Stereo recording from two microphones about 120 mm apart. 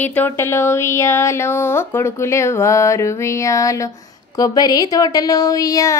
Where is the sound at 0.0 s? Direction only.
15° left (ahead or behind).